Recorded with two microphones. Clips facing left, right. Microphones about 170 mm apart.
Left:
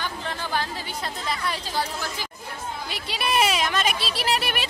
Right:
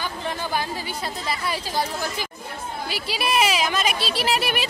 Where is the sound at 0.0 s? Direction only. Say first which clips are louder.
Right 2 dB; 15° right (ahead or behind).